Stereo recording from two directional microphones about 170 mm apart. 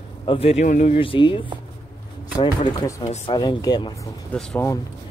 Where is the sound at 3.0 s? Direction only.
40° left (ahead or behind).